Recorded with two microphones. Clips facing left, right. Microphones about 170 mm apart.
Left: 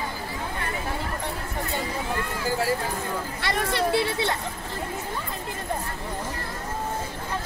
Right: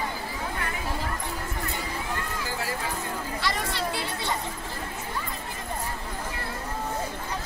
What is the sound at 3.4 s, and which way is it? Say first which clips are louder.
Speech: left 5 dB; 60° left (ahead or behind).